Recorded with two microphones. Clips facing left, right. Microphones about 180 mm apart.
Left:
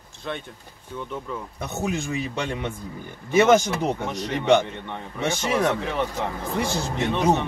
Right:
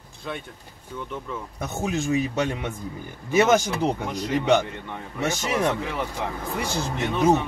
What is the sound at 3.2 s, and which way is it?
Speech, 10° right (ahead or behind).